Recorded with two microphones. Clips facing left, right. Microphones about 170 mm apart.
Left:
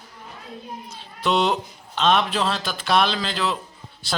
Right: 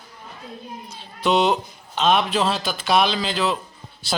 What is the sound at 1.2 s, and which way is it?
A man's voice, centre (ahead or behind).